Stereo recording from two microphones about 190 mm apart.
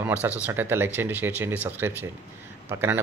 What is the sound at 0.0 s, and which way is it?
Speech, 10° right (ahead or behind).